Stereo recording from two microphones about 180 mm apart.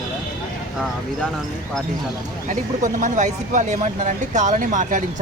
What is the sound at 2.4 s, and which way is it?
Speech, 45° right (ahead or behind).